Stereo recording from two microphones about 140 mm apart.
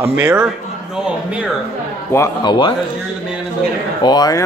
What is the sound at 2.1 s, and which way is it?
Speech, 15° left (ahead or behind).